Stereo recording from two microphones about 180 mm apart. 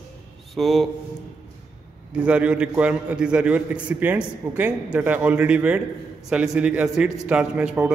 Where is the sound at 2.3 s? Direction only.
5° right (ahead or behind).